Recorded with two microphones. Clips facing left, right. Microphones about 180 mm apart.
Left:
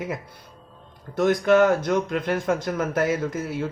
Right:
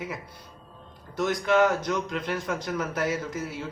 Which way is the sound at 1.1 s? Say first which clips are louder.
Left 5 dB; 55° left (ahead or behind).